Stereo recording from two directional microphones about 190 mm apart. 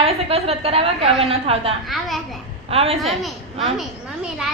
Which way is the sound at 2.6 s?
30° right (ahead or behind).